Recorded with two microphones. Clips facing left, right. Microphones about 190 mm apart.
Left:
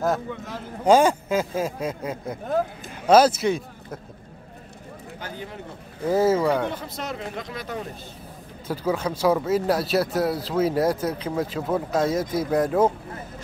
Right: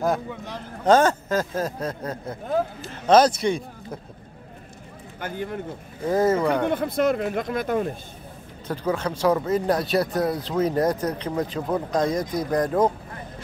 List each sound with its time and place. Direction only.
0.0 s speech: centre (ahead or behind)
5.2 s speech: 55° right (ahead or behind)
6.0 s speech: 5° left (ahead or behind)
6.7 s speech: 55° right (ahead or behind)
8.6 s speech: 10° left (ahead or behind)